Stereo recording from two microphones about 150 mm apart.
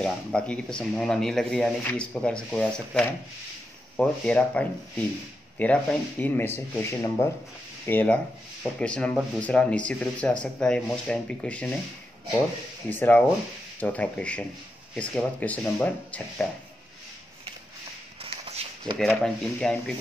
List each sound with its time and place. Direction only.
0.0 s speech: 5° left (ahead or behind)
12.9 s speech: 10° left (ahead or behind)
18.2 s a sound: 40° right (ahead or behind)
18.9 s speech: 5° left (ahead or behind)